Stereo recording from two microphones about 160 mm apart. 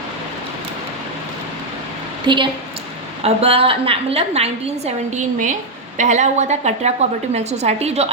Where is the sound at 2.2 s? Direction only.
30° right (ahead or behind).